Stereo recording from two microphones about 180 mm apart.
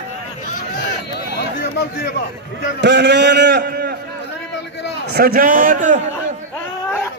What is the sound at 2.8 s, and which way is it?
A man's voice, 75° right (ahead or behind).